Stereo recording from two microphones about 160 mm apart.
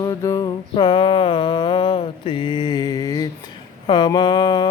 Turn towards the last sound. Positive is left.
turn(degrees=25)  # may be behind; listen again after turning